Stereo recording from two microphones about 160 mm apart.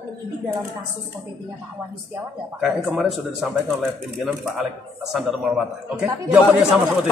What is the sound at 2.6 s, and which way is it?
Speech, centre (ahead or behind).